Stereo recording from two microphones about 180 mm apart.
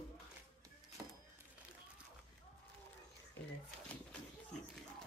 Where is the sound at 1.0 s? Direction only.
20° right (ahead or behind).